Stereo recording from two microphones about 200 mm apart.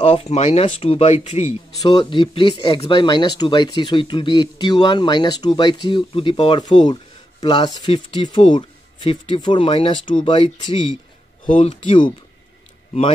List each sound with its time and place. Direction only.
0.0 s speech: 30° left (ahead or behind)